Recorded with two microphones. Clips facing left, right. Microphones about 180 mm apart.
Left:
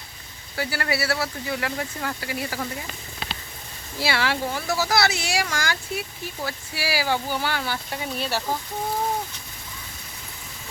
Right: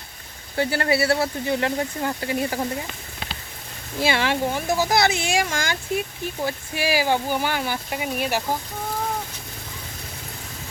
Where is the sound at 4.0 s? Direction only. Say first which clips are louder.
Right 3 dB; 20° right (ahead or behind).